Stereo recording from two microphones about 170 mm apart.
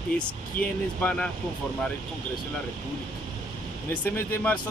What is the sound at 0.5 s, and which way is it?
Speech, 55° left (ahead or behind).